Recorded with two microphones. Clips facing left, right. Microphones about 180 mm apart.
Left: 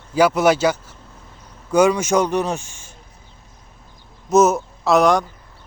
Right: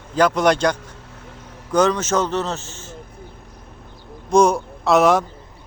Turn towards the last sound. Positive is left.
turn(degrees=0)  # may be behind; listen again after turning